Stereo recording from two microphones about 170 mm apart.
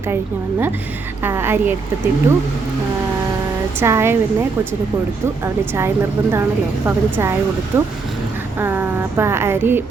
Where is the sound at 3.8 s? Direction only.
15° right (ahead or behind).